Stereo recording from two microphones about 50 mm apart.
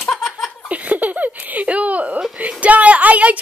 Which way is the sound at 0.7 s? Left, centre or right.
Right.